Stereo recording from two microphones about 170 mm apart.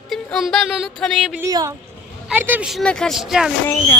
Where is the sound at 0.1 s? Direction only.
Centre (ahead or behind).